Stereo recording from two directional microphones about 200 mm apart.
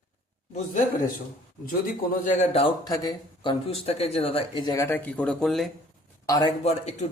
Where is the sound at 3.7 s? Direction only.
30° left (ahead or behind).